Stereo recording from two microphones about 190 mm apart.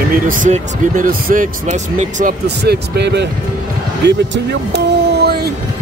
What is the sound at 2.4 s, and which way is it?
Speech, 60° right (ahead or behind).